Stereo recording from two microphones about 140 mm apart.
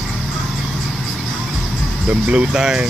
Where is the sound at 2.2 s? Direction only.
5° right (ahead or behind).